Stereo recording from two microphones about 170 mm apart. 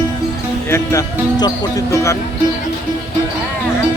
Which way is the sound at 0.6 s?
15° left (ahead or behind).